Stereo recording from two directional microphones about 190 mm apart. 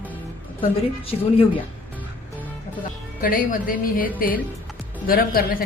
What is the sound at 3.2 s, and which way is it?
A woman's voice, 45° left (ahead or behind).